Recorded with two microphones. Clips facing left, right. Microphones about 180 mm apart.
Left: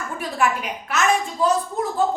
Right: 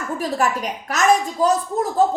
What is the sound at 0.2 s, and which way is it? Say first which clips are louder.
A woman's voice: right 1 dB; 40° right (ahead or behind).